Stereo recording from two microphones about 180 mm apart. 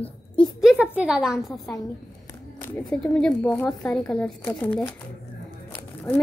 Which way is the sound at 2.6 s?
15° left (ahead or behind).